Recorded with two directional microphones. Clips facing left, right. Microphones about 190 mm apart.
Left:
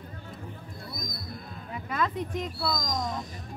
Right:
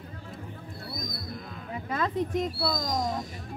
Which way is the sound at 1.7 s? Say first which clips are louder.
Even; 35° right (ahead or behind).